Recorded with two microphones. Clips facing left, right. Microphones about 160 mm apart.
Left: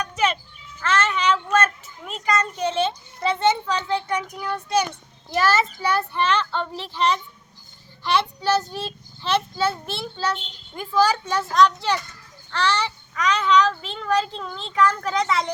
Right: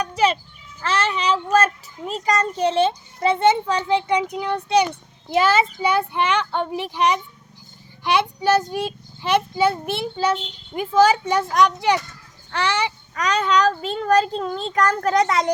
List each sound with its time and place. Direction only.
0.0 s children playing: 30° right (ahead or behind)
0.8 s a child's voice: 30° right (ahead or behind)
3.8 s a child's voice: 15° right (ahead or behind)
12.5 s a sound: 15° right (ahead or behind)
13.1 s a child's voice: 35° right (ahead or behind)